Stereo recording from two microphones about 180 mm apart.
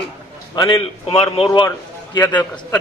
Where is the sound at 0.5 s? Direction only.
30° left (ahead or behind).